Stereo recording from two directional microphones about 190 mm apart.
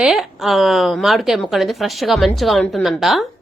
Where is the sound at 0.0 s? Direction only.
Centre (ahead or behind).